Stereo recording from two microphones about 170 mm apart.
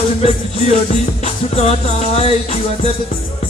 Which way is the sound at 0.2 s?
40° left (ahead or behind).